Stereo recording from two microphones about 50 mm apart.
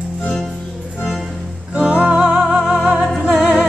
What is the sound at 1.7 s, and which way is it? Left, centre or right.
Music, centre.